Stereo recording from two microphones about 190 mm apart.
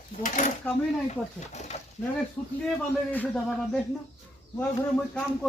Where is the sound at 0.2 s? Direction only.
40° left (ahead or behind).